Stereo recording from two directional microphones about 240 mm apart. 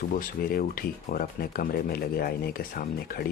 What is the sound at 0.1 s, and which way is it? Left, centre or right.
Speech, left.